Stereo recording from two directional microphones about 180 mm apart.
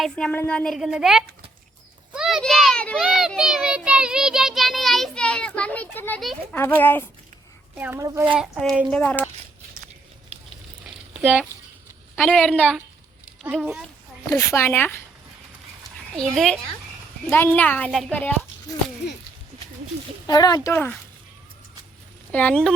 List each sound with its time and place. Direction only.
0.0 s a child's voice: 5° left (ahead or behind)
7.8 s a child's voice: 15° right (ahead or behind)
8.4 s a child's voice: centre (ahead or behind)
11.2 s a child's voice: 10° right (ahead or behind)
13.4 s a child's voice: 5° right (ahead or behind)
14.3 s a child's voice: 15° left (ahead or behind)
16.1 s a child's voice: 5° left (ahead or behind)
20.2 s speech: 20° left (ahead or behind)
20.7 s a child's voice: 10° left (ahead or behind)
22.3 s speech: 10° left (ahead or behind)